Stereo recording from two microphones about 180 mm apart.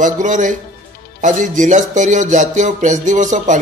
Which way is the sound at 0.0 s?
45° right (ahead or behind).